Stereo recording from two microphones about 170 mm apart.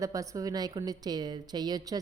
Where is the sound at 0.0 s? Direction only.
20° right (ahead or behind).